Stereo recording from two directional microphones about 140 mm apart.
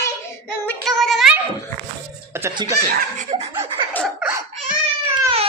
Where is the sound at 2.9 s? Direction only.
90° right.